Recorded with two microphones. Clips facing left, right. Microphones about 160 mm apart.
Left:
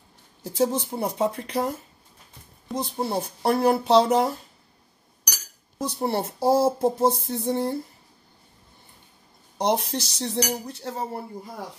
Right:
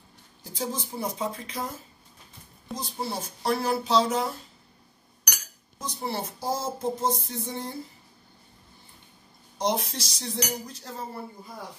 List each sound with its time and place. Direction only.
0.4 s speech: 70° left (ahead or behind)
2.7 s speech: 60° left (ahead or behind)
5.8 s speech: 60° left (ahead or behind)
9.8 s cutlery: 65° left (ahead or behind)